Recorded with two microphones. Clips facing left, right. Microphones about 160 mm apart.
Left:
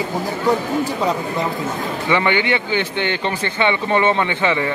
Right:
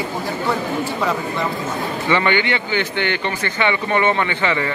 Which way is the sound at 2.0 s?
15° left (ahead or behind).